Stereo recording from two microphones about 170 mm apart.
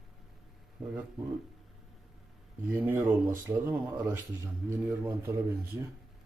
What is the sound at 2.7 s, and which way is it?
Speech, 15° right (ahead or behind).